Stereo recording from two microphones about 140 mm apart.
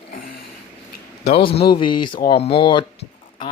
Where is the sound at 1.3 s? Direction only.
40° left (ahead or behind).